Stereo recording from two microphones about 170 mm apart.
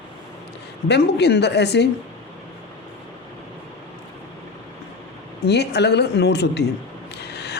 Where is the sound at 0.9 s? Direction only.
80° left.